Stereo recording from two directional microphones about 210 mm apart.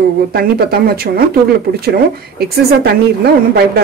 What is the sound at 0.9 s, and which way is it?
Speech, 45° right (ahead or behind).